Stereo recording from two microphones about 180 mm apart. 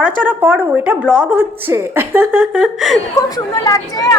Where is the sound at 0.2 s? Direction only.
10° right (ahead or behind).